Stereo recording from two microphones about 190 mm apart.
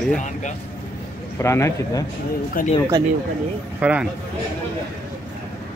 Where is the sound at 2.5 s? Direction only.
45° left (ahead or behind).